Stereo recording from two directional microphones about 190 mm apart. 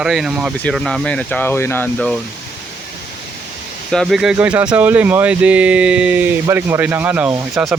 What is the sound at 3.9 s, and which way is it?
Speech, centre (ahead or behind).